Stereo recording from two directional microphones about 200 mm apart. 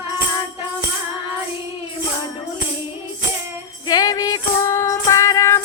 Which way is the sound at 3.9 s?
20° left (ahead or behind).